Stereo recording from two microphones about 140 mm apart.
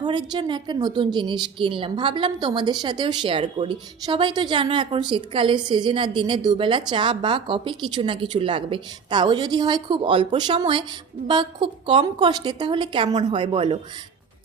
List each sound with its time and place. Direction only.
0.0 s a woman's voice: 30° right (ahead or behind)